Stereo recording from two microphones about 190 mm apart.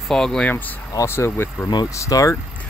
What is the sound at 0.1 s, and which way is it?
Speech, 5° left (ahead or behind).